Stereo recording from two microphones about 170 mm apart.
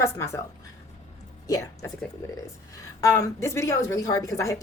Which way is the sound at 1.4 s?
20° left (ahead or behind).